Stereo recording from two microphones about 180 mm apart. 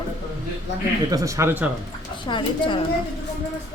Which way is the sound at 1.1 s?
20° right (ahead or behind).